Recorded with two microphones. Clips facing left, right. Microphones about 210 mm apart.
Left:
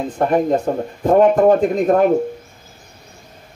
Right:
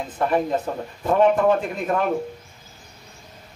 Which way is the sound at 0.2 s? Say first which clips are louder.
Left 5 dB; 45° left (ahead or behind).